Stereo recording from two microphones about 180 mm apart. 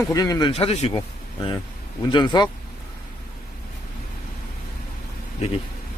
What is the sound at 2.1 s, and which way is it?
Speech, 25° left (ahead or behind).